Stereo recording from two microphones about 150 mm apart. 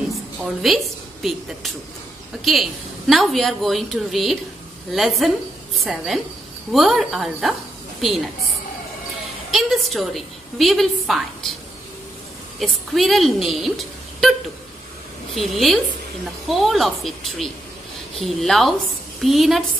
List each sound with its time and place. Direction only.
0.1 s a sound: centre (ahead or behind)
2.4 s a woman's voice: centre (ahead or behind)
9.5 s a woman's voice: centre (ahead or behind)
12.5 s speech: centre (ahead or behind)
15.3 s a woman's voice: centre (ahead or behind)